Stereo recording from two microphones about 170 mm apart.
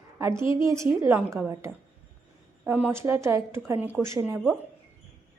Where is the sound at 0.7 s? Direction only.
15° right (ahead or behind).